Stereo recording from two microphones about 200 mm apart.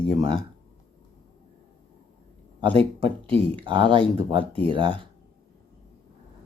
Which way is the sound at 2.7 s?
25° right (ahead or behind).